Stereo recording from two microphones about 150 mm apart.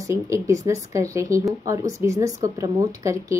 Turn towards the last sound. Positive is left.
turn(degrees=-20)  # may be behind; listen again after turning